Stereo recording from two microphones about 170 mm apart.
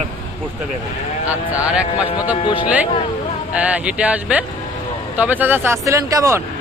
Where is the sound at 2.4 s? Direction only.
30° left (ahead or behind).